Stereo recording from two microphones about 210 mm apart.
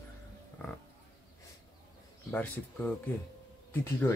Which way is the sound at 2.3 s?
5° left (ahead or behind).